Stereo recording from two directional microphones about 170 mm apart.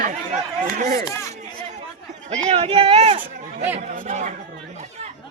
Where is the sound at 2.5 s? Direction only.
35° right (ahead or behind).